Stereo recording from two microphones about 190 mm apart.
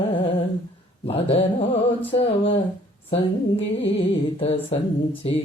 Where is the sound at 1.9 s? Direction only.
30° left (ahead or behind).